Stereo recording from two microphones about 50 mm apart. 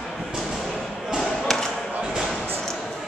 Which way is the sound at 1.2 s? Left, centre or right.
Centre.